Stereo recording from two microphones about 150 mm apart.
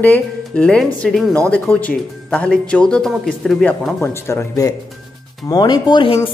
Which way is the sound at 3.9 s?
15° left (ahead or behind).